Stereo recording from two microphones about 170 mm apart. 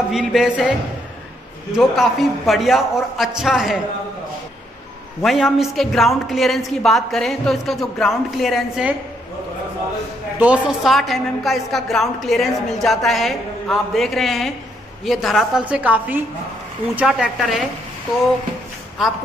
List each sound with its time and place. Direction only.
0.1 s a woman's voice: centre (ahead or behind)
5.2 s a woman's voice: centre (ahead or behind)
10.4 s a woman's voice: 5° right (ahead or behind)
19.0 s a woman's voice: centre (ahead or behind)